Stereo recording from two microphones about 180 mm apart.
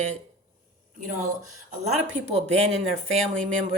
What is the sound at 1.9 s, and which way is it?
Speech, 35° right (ahead or behind).